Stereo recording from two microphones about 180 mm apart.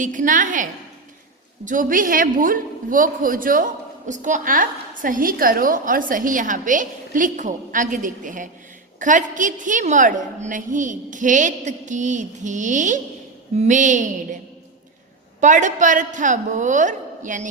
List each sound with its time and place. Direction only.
0.0 s a man's voice: 45° right (ahead or behind)
15.4 s a man's voice: 45° right (ahead or behind)